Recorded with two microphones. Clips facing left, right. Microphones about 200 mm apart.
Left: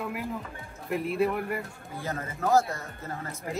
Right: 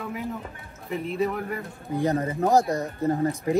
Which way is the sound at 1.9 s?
20° right (ahead or behind).